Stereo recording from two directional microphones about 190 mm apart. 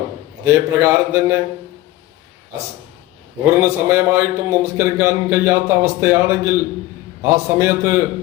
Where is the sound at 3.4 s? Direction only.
15° right (ahead or behind).